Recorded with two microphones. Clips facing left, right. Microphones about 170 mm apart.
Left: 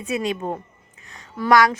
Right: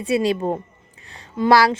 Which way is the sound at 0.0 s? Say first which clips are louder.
Right 5 dB; 30° right (ahead or behind).